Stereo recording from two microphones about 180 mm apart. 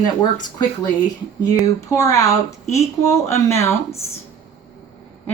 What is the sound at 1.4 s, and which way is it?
Speech, 20° left (ahead or behind).